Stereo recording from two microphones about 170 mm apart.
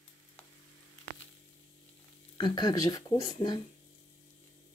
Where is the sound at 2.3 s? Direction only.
25° left (ahead or behind).